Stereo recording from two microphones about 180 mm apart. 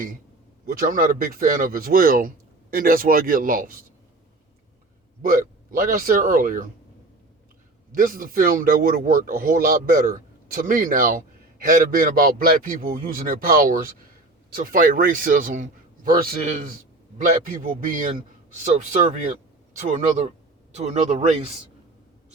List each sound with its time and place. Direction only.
0.7 s a man's voice: 55° right (ahead or behind)
5.2 s a man's voice: 50° right (ahead or behind)
7.9 s a man's voice: 50° right (ahead or behind)